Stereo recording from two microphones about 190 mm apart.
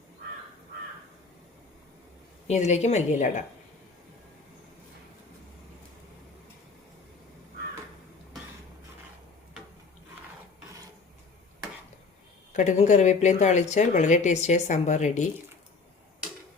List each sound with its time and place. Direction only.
2.5 s a woman's voice: 35° left (ahead or behind)
12.5 s a woman's voice: 40° left (ahead or behind)